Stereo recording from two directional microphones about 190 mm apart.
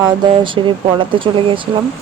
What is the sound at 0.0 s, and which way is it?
Speech, 25° right (ahead or behind).